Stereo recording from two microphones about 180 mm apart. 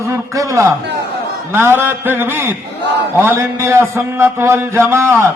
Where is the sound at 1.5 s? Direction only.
15° right (ahead or behind).